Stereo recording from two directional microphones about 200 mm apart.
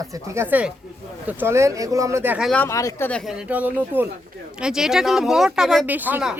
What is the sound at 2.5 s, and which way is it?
Speech, 10° left (ahead or behind).